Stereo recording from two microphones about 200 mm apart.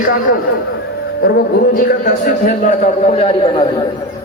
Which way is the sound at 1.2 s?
50° left (ahead or behind).